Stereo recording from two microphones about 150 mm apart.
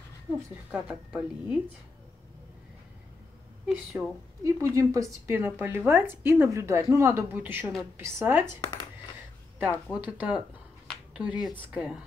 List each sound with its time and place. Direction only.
0.7 s a woman's voice: 5° right (ahead or behind)
3.6 s speech: centre (ahead or behind)
4.4 s a woman's voice: 20° right (ahead or behind)
9.9 s a woman's voice: 10° right (ahead or behind)